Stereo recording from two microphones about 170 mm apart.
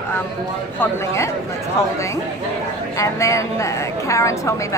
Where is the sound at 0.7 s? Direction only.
15° left (ahead or behind).